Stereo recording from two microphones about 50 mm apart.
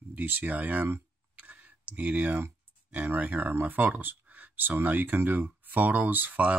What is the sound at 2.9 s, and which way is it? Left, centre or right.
Speech, right.